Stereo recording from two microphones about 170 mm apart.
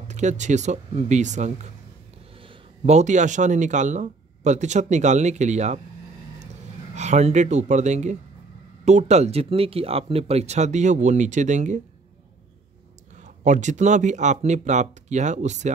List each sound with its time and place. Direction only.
0.1 s speech: 45° right (ahead or behind)
2.8 s speech: 40° right (ahead or behind)
7.0 s speech: 40° right (ahead or behind)
13.4 s speech: 45° right (ahead or behind)